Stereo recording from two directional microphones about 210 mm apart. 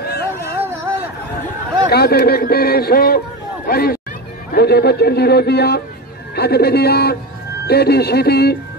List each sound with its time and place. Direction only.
0.0 s music: 50° left (ahead or behind)
1.9 s speech: 50° left (ahead or behind)